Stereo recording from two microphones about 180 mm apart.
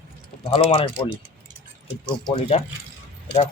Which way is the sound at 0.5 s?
30° left (ahead or behind).